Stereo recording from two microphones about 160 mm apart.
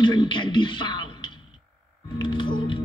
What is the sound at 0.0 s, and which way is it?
Speech, 30° left (ahead or behind).